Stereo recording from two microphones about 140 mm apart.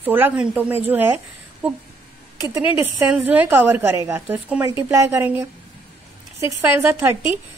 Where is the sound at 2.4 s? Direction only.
15° right (ahead or behind).